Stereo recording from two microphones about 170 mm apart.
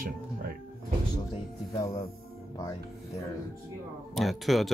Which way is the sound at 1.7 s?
20° left (ahead or behind).